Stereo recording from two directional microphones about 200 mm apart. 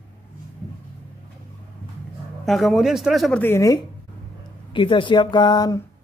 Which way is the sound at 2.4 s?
Centre (ahead or behind).